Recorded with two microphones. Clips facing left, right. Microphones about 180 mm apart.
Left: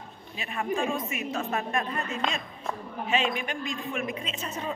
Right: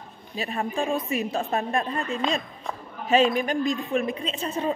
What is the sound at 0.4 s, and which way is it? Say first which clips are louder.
A woman's voice: right 2 dB; 35° right (ahead or behind).